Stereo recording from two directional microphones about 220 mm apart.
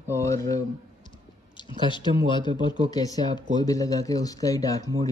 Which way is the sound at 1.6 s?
20° left (ahead or behind).